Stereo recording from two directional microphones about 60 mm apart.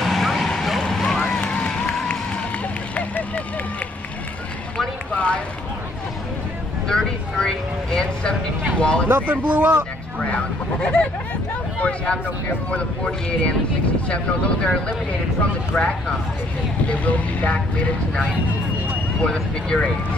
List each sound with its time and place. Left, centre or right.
0.0 s vehicle: centre
1.4 s run: centre
3.0 s vehicle: left
5.1 s a sound: left
6.9 s vehicle: centre
8.7 s a sound: centre
9.1 s speech: right
10.1 s speech: left
14.0 s speech: centre
16.9 s speech: left
19.2 s speech: centre